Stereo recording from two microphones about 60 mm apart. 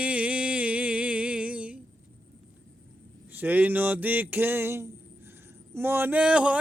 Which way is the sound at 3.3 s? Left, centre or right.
Right.